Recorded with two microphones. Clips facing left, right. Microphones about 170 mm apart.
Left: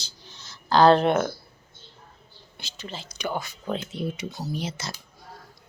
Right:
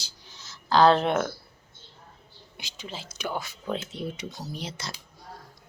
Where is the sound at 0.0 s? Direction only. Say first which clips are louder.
Left 2 dB; 5° right (ahead or behind).